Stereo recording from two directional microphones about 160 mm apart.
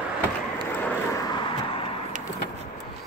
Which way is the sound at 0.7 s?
10° left (ahead or behind).